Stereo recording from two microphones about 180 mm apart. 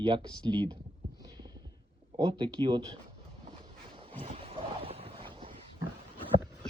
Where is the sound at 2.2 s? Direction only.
25° right (ahead or behind).